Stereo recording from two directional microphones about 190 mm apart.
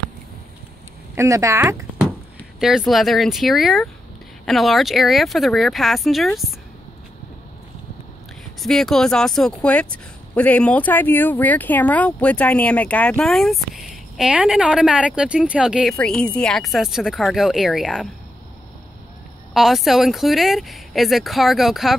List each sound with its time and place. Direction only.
1.1 s speech: 15° right (ahead or behind)
2.6 s speech: centre (ahead or behind)
8.5 s speech: centre (ahead or behind)
19.5 s speech: centre (ahead or behind)